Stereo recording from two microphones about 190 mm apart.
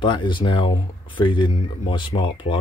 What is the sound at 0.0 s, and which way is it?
Speech, 25° left (ahead or behind).